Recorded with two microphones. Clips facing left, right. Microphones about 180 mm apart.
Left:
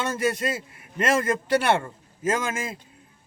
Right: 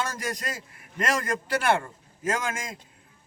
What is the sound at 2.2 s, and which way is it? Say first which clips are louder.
Speech: left 3 dB; 25° left (ahead or behind).